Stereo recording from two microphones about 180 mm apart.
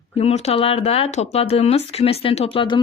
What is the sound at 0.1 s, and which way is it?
Speech, 35° left (ahead or behind).